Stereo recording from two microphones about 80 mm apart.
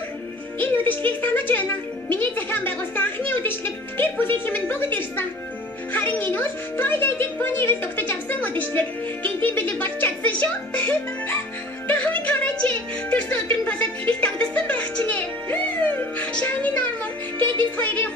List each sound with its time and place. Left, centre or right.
0.6 s a child's voice: left
11.9 s music: centre